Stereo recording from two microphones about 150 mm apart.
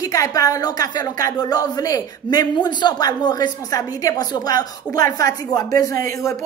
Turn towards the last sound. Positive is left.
turn(degrees=20)  # may be behind; listen again after turning